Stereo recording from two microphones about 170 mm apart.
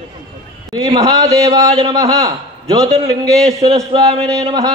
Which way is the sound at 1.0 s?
20° right (ahead or behind).